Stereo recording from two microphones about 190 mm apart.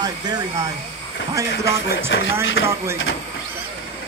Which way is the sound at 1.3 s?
15° right (ahead or behind).